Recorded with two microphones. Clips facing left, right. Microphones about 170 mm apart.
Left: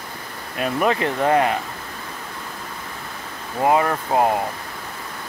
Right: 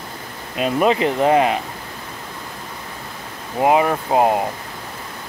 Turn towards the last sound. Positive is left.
turn(degrees=-20)  # may be behind; listen again after turning